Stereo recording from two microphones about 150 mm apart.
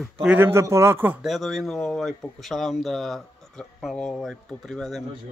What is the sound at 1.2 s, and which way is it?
Speech, centre (ahead or behind).